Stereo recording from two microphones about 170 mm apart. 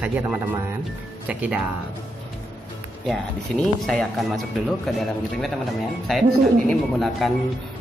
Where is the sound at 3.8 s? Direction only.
Centre (ahead or behind).